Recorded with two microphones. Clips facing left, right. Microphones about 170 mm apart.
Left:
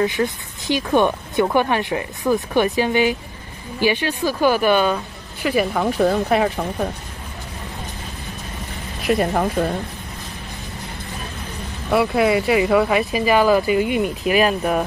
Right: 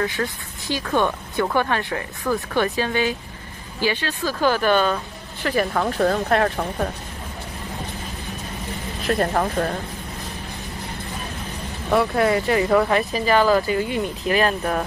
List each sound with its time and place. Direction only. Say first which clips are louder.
0.0 s speech: left 5 dB; 20° left (ahead or behind)
9.0 s speech: left 2 dB; 10° left (ahead or behind)
11.9 s speech: left 2 dB; 10° left (ahead or behind)